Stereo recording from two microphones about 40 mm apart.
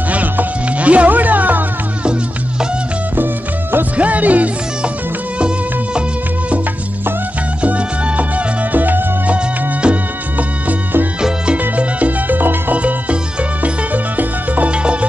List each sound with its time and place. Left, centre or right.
0.1 s music: right
3.9 s music: right
7.6 s music: right
8.7 s music: right
9.3 s music: right
10.3 s music: right
11.1 s music: right
11.7 s music: right
12.7 s music: right
14.7 s music: right